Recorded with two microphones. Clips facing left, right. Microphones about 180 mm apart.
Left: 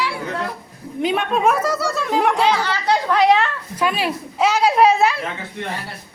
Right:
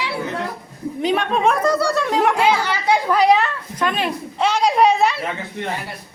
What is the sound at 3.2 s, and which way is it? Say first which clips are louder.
A woman's voice: even; centre (ahead or behind).